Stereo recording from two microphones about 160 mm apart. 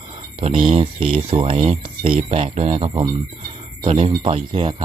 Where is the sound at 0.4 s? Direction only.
35° right (ahead or behind).